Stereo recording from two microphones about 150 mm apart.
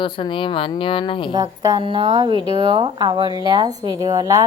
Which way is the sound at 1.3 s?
25° right (ahead or behind).